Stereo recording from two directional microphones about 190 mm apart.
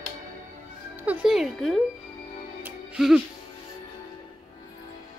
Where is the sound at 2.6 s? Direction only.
5° right (ahead or behind).